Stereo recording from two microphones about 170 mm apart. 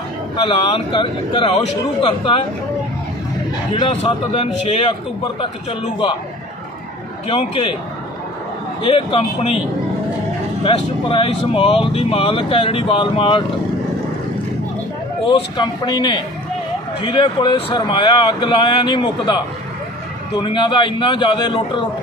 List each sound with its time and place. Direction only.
0.5 s speech: 35° left (ahead or behind)
3.7 s speech: 35° left (ahead or behind)
7.2 s speech: 35° left (ahead or behind)
8.8 s speech: 35° left (ahead or behind)
10.6 s speech: 30° left (ahead or behind)
15.2 s speech: 25° left (ahead or behind)